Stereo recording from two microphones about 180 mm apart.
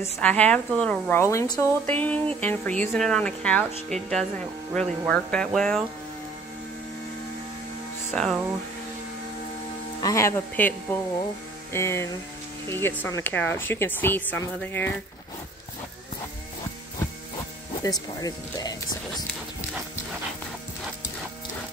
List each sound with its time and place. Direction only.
0.0 s a woman's voice: 10° left (ahead or behind)
8.1 s speech: centre (ahead or behind)
10.0 s a woman's voice: 15° left (ahead or behind)
17.8 s speech: 20° left (ahead or behind)